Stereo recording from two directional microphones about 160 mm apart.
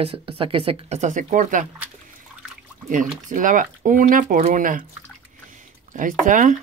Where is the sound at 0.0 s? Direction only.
35° right (ahead or behind); by 1.7 s 50° right (ahead or behind).